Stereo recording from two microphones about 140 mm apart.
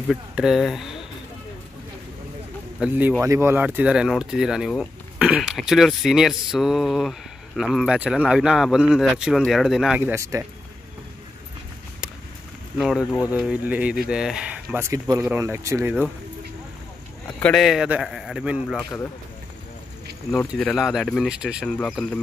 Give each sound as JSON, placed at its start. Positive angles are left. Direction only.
{"t": 0.1, "sound": "speech", "side_deg": 0}
{"t": 2.8, "sound": "speech", "side_deg": -10}
{"t": 12.7, "sound": "speech", "side_deg": 0}
{"t": 17.4, "sound": "speech", "side_deg": 5}
{"t": 17.6, "sound": "speech", "side_deg": -5}
{"t": 20.2, "sound": "speech", "side_deg": 5}
{"t": 21.3, "sound": "speech", "side_deg": -5}
{"t": 21.6, "sound": "speech", "side_deg": 10}